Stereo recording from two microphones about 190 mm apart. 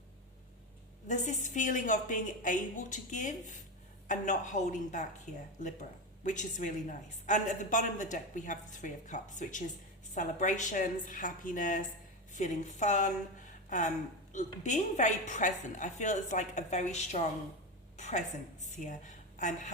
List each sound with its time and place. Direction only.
1.0 s a woman's voice: 40° left (ahead or behind)
17.9 s a sound: 40° left (ahead or behind)
18.8 s a woman's voice: 40° left (ahead or behind)